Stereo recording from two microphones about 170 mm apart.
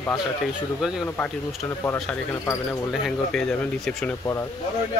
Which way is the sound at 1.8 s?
15° left (ahead or behind).